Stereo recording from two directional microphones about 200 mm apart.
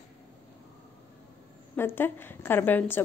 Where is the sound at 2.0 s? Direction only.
10° left (ahead or behind).